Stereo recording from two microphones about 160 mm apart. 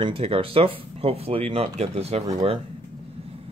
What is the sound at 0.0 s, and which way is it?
Speech, 35° right (ahead or behind).